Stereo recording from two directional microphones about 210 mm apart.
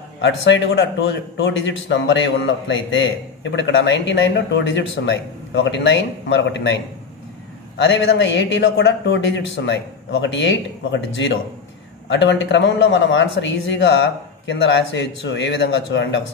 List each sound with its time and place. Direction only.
0.2 s a man's voice: 60° left (ahead or behind)